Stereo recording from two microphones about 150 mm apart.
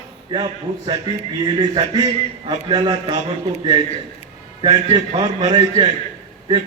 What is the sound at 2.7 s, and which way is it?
Speech, 30° right (ahead or behind).